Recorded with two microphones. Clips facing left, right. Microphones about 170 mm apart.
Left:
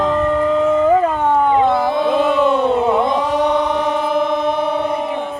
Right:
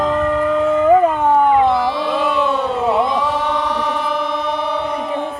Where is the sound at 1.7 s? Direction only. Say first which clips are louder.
Left 2 dB; 50° left (ahead or behind).